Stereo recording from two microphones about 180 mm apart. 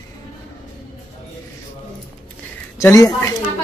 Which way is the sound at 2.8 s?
15° left (ahead or behind).